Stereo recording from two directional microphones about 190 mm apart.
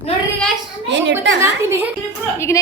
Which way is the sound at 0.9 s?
70° right (ahead or behind).